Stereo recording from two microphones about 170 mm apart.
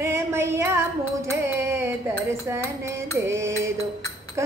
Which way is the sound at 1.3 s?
15° right (ahead or behind).